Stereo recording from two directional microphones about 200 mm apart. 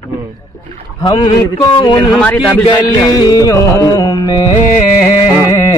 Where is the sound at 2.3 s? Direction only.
20° left (ahead or behind).